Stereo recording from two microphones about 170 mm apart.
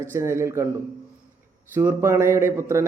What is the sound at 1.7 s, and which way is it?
A man's voice, 15° right (ahead or behind).